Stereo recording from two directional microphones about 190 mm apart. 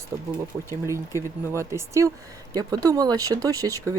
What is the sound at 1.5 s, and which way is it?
Speech, 15° right (ahead or behind).